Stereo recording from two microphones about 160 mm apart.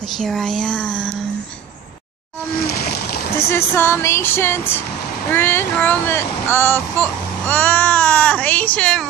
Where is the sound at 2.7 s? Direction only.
75° left (ahead or behind).